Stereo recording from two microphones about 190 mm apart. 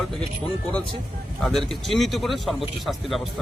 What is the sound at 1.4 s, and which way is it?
Speech, centre (ahead or behind).